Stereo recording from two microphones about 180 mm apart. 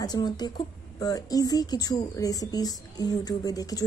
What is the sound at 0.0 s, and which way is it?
Speech, 20° left (ahead or behind).